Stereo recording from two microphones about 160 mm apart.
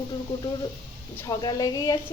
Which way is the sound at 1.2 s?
25° left (ahead or behind).